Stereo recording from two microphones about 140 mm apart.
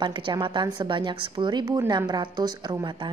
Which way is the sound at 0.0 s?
35° right (ahead or behind).